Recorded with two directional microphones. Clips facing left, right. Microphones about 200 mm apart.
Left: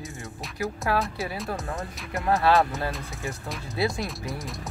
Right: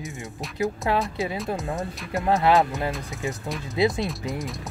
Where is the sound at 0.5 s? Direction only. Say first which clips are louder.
Right 3 dB; 20° right (ahead or behind).